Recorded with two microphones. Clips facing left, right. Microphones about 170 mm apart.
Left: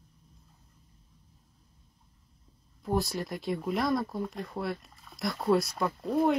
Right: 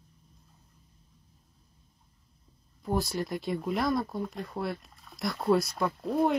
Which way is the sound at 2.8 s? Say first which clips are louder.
Even; centre (ahead or behind).